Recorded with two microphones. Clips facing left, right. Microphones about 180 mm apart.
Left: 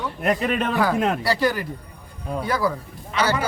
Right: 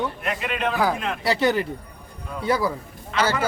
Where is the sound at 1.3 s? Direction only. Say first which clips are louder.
Right 1 dB; 20° right (ahead or behind).